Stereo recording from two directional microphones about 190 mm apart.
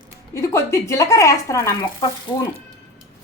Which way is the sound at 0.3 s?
15° left (ahead or behind).